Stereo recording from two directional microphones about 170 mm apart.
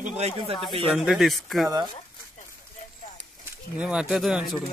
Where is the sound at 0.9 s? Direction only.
Centre (ahead or behind).